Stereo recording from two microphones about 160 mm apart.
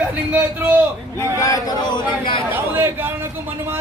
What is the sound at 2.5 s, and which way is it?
Speech, 10° right (ahead or behind).